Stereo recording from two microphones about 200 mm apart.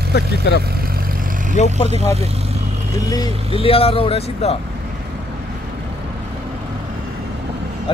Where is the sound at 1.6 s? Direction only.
35° left (ahead or behind).